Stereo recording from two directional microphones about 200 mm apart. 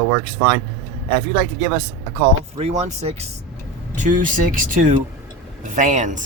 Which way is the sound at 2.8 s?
30° right (ahead or behind).